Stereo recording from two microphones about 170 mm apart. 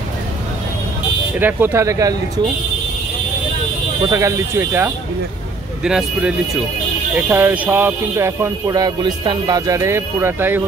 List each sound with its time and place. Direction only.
1.4 s speech: 10° right (ahead or behind)
4.1 s speech: 20° right (ahead or behind)